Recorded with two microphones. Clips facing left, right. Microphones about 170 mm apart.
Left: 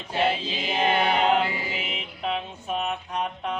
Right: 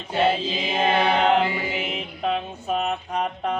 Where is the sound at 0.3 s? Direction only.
40° right (ahead or behind).